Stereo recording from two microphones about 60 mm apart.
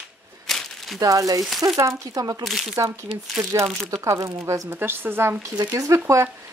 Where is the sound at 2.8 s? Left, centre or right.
Right.